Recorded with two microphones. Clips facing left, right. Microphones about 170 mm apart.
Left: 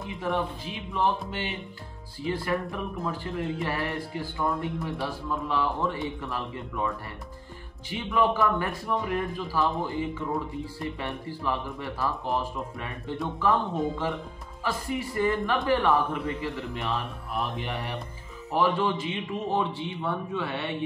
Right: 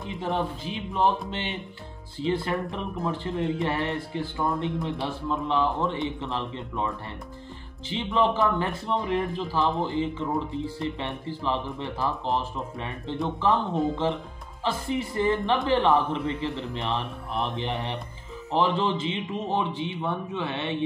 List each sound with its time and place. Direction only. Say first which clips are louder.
2.2 s a man's voice: right 2 dB; 25° right (ahead or behind)
7.9 s a man's voice: right 1 dB; 25° right (ahead or behind)